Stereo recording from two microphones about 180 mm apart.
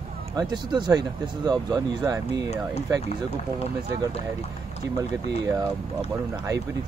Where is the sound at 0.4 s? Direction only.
25° right (ahead or behind).